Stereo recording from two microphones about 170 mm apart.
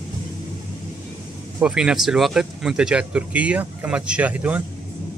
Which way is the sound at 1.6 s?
5° right (ahead or behind).